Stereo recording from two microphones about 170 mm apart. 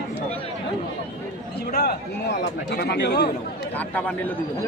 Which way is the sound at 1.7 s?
70° left (ahead or behind).